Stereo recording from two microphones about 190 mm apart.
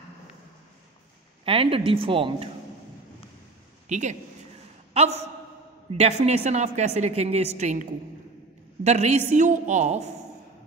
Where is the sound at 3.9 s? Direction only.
40° right (ahead or behind).